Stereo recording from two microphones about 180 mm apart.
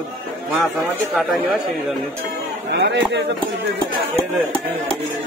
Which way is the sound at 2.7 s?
70° right (ahead or behind).